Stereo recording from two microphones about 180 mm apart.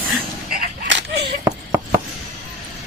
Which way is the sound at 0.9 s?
75° right (ahead or behind).